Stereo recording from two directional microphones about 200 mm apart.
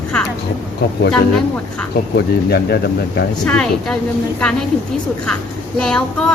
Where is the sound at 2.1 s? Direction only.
55° left (ahead or behind).